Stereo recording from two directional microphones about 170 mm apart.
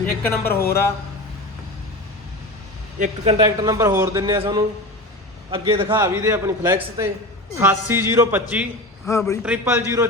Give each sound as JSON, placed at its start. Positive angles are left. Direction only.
{"t": 0.2, "sound": "speech", "side_deg": 15}
{"t": 3.0, "sound": "speech", "side_deg": -35}
{"t": 3.4, "sound": "a man's voice", "side_deg": -20}
{"t": 6.0, "sound": "a man's voice", "side_deg": -15}
{"t": 9.0, "sound": "speech", "side_deg": 15}
{"t": 9.4, "sound": "a man's voice", "side_deg": -10}